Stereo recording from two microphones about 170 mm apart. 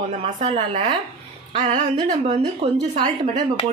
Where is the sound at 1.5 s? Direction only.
35° right (ahead or behind).